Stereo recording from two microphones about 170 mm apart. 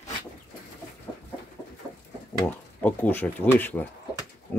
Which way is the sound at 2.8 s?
10° left (ahead or behind).